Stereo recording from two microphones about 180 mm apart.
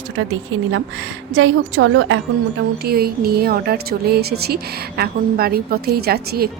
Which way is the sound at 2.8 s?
60° right (ahead or behind).